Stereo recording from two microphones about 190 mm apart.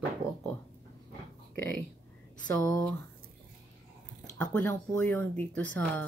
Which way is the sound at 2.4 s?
20° left (ahead or behind).